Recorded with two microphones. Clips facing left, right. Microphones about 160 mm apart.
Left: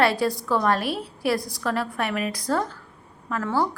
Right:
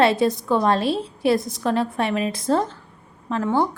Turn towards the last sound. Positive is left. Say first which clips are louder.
# right 4 dB
turn(degrees=-20)  # may be behind; listen again after turning